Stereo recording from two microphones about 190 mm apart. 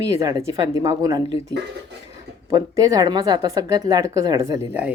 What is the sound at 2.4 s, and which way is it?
A woman's voice, 20° right (ahead or behind).